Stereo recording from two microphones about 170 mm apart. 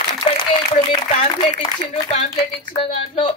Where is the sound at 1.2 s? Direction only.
35° left (ahead or behind).